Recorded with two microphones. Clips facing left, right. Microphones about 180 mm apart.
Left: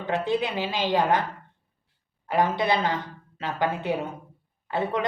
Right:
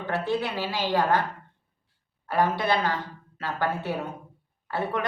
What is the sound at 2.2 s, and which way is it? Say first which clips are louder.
A woman's voice: left 1 dB; 20° left (ahead or behind).